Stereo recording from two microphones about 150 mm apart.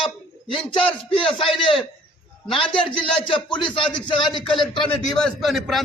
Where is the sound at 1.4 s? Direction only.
35° left (ahead or behind).